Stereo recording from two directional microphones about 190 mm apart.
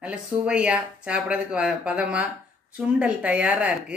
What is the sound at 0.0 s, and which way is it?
Speech, 5° right (ahead or behind).